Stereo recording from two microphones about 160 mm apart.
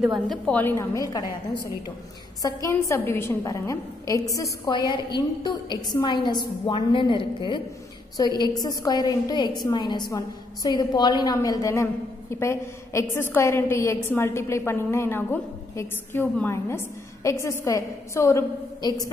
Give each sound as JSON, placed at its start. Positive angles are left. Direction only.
{"t": 0.0, "sound": "a woman's voice", "side_deg": 0}
{"t": 0.5, "sound": "a woman's voice", "side_deg": 10}